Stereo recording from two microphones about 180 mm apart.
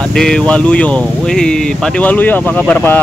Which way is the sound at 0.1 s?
5° left (ahead or behind).